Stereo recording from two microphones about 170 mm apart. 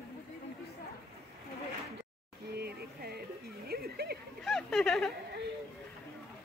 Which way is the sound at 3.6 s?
65° right (ahead or behind).